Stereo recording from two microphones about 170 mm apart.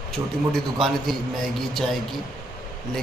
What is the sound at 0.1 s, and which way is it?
A man's voice, centre (ahead or behind).